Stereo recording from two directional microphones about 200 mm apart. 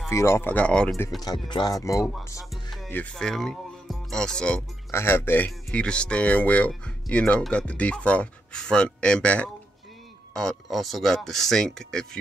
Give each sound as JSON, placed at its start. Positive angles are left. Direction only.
{"t": 0.1, "sound": "speech", "side_deg": 15}
{"t": 1.2, "sound": "speech", "side_deg": 20}
{"t": 2.5, "sound": "music", "side_deg": 0}
{"t": 2.9, "sound": "speech", "side_deg": 5}